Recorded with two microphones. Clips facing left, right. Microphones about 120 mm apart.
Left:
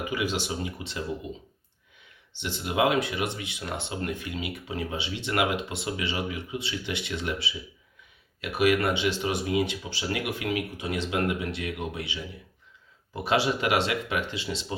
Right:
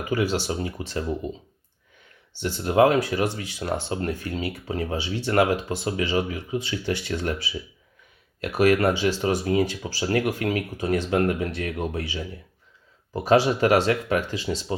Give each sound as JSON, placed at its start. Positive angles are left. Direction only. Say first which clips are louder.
{"t": 0.1, "sound": "speech", "louder": "right 8 dB", "side_deg": -40}
{"t": 2.4, "sound": "speech", "louder": "right 7 dB", "side_deg": -40}
{"t": 13.2, "sound": "speech", "louder": "right 6 dB", "side_deg": -40}